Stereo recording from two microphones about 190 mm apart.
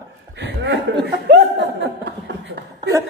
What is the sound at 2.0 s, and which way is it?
Chuckle, 65° right (ahead or behind).